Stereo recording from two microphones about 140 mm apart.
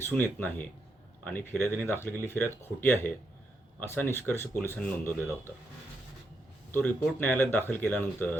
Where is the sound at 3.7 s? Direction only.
15° left (ahead or behind).